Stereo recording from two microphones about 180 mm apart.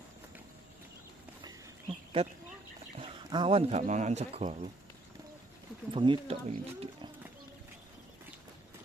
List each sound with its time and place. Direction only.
1.4 s a sound: 30° right (ahead or behind)
3.0 s speech: 30° right (ahead or behind)
5.9 s speech: 30° right (ahead or behind)